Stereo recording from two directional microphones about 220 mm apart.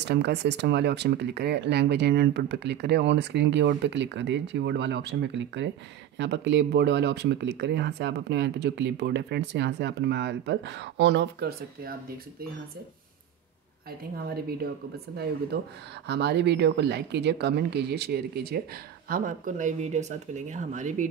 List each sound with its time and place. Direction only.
0.0 s speech: 50° right (ahead or behind)
14.1 s speech: 45° right (ahead or behind)
16.1 s speech: 50° right (ahead or behind); by 21.1 s 35° right (ahead or behind)